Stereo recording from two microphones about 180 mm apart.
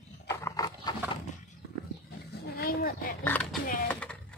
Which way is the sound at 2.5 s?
55° left (ahead or behind).